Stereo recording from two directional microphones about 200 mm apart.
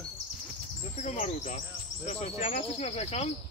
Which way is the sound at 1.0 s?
35° left (ahead or behind).